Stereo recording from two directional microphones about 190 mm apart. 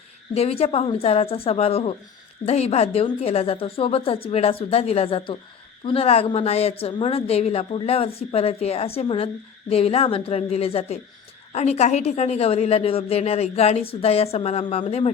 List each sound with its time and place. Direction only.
0.3 s a woman's voice: 30° left (ahead or behind)